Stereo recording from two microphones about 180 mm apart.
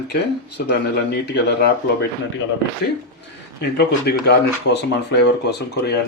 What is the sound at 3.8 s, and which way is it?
Speech, 65° left (ahead or behind).